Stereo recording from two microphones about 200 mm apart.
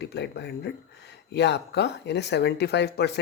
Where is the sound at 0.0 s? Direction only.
55° left (ahead or behind).